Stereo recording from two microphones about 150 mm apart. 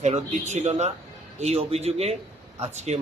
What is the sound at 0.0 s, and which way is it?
A man's voice, 50° right (ahead or behind).